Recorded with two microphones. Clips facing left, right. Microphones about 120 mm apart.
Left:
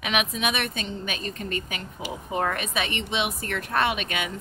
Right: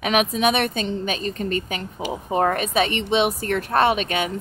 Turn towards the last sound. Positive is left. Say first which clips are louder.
# right 7 dB
turn(degrees=-35)  # may be behind; listen again after turning